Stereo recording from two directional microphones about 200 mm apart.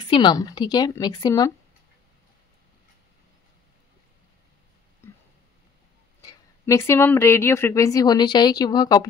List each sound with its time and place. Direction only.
0.1 s a woman's voice: 20° left (ahead or behind)
6.2 s speech: 15° left (ahead or behind)